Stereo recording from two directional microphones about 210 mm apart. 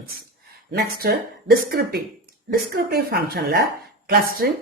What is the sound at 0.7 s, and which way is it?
Speech, 50° right (ahead or behind).